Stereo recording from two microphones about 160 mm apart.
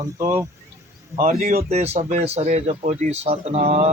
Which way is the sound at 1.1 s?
60° right (ahead or behind).